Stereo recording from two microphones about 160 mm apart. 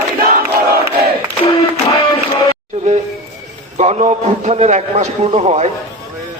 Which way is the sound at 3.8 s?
45° right (ahead or behind).